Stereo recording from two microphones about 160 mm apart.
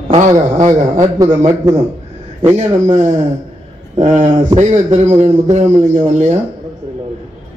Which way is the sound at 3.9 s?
45° right (ahead or behind).